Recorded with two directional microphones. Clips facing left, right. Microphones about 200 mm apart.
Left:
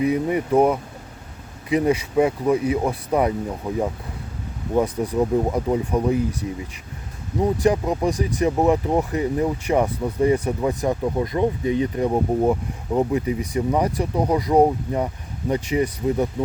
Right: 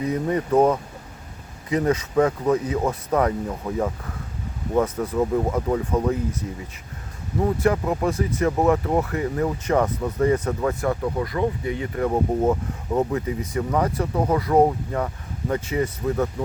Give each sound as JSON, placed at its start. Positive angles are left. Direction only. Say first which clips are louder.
{"t": 0.0, "sound": "speech", "louder": "left 3 dB", "side_deg": 10}